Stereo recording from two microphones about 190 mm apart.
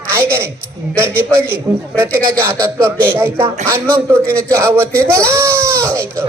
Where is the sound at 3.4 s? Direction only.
35° right (ahead or behind).